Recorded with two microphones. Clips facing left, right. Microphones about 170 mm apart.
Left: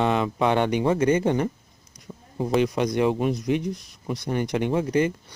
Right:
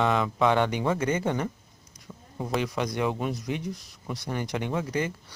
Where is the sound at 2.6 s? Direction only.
20° left (ahead or behind).